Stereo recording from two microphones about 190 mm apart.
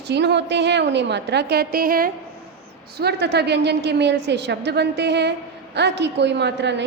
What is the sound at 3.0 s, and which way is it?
A woman's voice, 60° right (ahead or behind).